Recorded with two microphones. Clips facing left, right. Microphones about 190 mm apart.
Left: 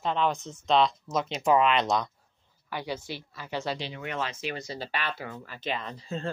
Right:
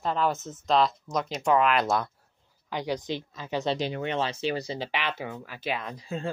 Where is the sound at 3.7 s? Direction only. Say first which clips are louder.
Right 7 dB; 50° right (ahead or behind).